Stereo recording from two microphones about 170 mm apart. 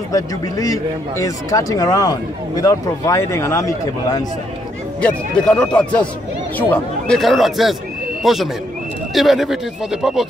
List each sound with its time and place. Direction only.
0.1 s speech: 20° left (ahead or behind)
5.0 s a man's voice: 5° left (ahead or behind)